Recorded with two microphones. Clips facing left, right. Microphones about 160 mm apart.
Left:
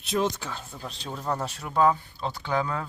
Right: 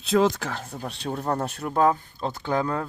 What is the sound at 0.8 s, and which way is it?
Speech, 55° right (ahead or behind).